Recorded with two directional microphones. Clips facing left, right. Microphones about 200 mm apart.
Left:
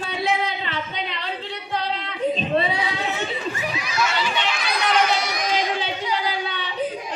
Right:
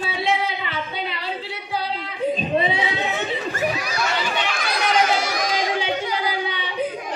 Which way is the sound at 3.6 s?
45° right (ahead or behind).